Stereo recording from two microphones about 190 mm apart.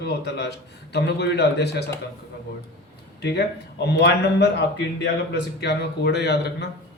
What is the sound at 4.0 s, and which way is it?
Speech, 60° left (ahead or behind).